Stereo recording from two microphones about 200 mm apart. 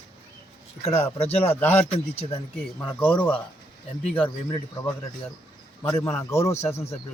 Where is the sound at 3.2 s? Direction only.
5° left (ahead or behind).